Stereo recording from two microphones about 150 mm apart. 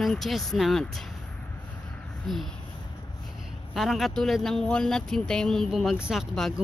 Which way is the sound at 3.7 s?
Centre (ahead or behind).